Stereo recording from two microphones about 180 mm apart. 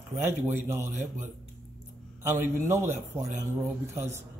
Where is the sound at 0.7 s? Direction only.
15° right (ahead or behind).